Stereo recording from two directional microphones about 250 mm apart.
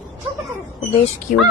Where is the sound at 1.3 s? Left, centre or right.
Left.